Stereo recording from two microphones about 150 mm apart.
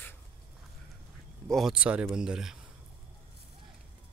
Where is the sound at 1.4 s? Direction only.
Centre (ahead or behind).